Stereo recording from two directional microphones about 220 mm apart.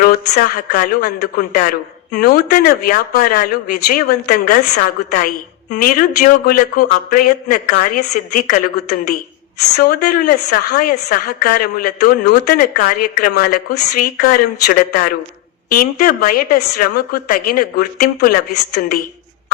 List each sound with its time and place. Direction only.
0.0 s a woman's voice: 40° left (ahead or behind)
9.7 s a woman's voice: 45° left (ahead or behind)